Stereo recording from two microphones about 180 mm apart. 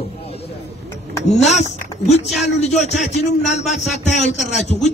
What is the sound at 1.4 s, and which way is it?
A man's voice, 40° left (ahead or behind).